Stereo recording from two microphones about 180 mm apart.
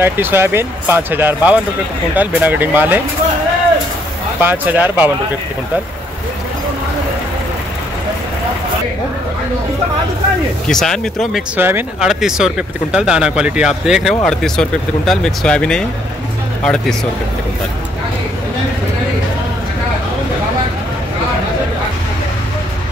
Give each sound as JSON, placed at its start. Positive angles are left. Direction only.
{"t": 0.0, "sound": "speech", "side_deg": -10}
{"t": 4.4, "sound": "speech", "side_deg": -10}
{"t": 10.7, "sound": "speech", "side_deg": 5}
{"t": 11.5, "sound": "speech", "side_deg": -10}